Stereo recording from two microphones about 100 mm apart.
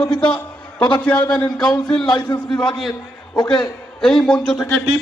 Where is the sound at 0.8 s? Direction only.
50° left (ahead or behind).